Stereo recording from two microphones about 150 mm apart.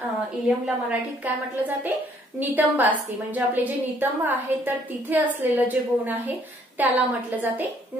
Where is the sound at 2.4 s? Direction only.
10° right (ahead or behind).